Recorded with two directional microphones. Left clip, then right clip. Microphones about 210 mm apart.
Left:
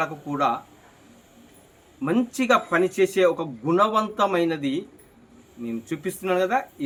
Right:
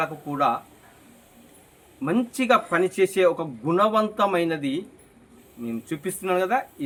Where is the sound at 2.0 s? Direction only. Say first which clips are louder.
Left 1 dB; centre (ahead or behind).